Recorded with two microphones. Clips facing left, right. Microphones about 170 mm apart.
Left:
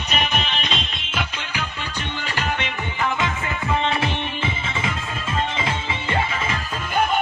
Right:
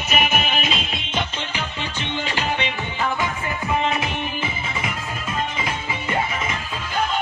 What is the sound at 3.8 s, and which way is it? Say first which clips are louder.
Music: even; 30° left (ahead or behind).